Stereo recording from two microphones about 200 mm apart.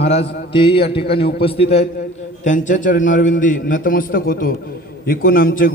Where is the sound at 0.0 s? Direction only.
30° left (ahead or behind).